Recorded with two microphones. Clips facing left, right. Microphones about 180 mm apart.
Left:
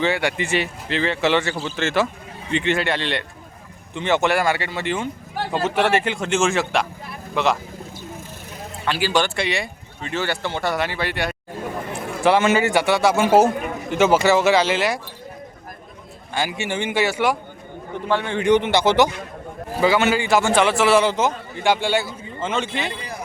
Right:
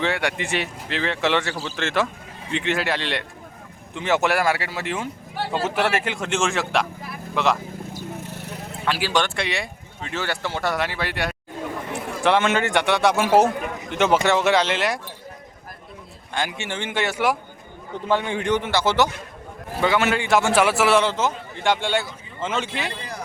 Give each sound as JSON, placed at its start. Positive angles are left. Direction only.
{"t": 0.0, "sound": "speech", "side_deg": 0}
{"t": 8.2, "sound": "a sound", "side_deg": -65}
{"t": 8.8, "sound": "speech", "side_deg": 0}
{"t": 16.3, "sound": "speech", "side_deg": 5}
{"t": 18.1, "sound": "a man's voice", "side_deg": -15}
{"t": 18.4, "sound": "a man's voice", "side_deg": 20}
{"t": 19.8, "sound": "speech", "side_deg": 0}
{"t": 21.0, "sound": "speech", "side_deg": 15}